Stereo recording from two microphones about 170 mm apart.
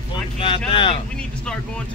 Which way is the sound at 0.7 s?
30° left (ahead or behind).